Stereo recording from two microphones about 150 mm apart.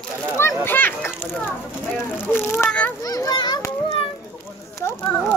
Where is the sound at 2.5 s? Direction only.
10° left (ahead or behind).